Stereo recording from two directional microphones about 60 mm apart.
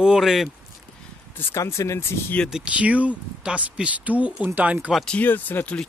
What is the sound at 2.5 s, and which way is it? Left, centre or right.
Speech, centre.